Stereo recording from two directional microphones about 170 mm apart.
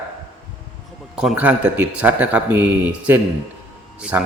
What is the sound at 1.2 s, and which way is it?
A man's voice, 5° right (ahead or behind).